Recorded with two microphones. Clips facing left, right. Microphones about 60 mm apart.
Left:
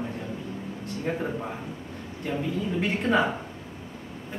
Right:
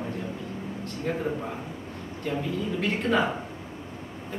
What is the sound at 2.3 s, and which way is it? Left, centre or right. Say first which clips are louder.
Speech: even; centre.